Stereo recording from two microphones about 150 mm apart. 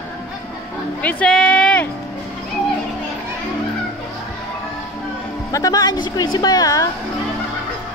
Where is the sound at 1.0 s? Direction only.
10° left (ahead or behind).